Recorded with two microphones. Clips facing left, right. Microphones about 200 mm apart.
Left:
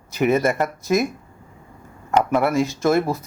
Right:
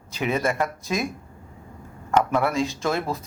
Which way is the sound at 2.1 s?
15° left (ahead or behind).